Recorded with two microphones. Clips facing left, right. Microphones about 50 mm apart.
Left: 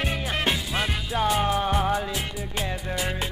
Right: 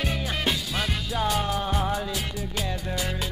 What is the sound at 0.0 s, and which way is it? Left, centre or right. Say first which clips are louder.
Music: left 1 dB; centre.